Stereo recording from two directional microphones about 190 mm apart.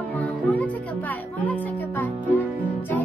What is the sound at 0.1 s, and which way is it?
Music, 10° left (ahead or behind).